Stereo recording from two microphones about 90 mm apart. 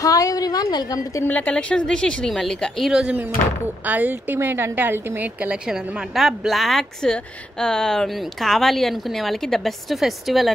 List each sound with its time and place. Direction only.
0.0 s a woman's voice: 40° left (ahead or behind)
1.2 s a woman's voice: 15° left (ahead or behind); by 5.6 s 15° right (ahead or behind)
5.7 s speech: 5° right (ahead or behind)